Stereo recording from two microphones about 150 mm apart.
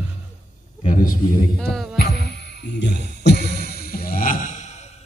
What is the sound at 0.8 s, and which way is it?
Speech, 65° left (ahead or behind).